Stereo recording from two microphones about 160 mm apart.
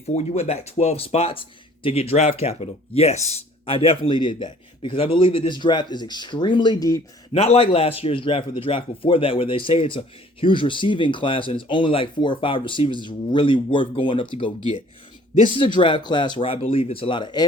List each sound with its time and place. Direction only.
0.0 s speech: 45° left (ahead or behind); by 7.0 s 20° left (ahead or behind)
7.3 s speech: 40° left (ahead or behind)